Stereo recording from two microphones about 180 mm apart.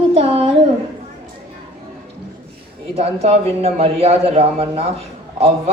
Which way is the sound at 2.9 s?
35° right (ahead or behind).